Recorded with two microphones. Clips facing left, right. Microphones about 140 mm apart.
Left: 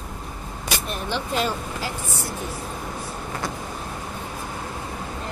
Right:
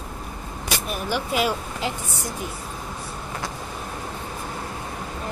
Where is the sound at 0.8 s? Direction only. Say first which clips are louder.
Right 4 dB; 5° right (ahead or behind).